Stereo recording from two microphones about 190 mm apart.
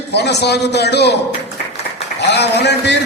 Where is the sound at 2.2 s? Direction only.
65° left (ahead or behind).